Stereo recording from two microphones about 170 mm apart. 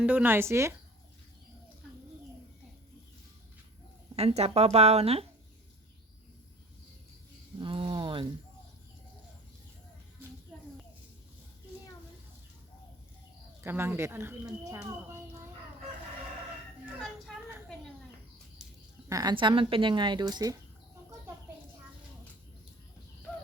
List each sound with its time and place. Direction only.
0.0 s speech: 10° right (ahead or behind)
4.1 s a woman's voice: 35° right (ahead or behind)
7.6 s a sound: 30° right (ahead or behind)
13.7 s speech: 15° right (ahead or behind)
17.0 s a sound: centre (ahead or behind)
19.0 s speech: 20° right (ahead or behind)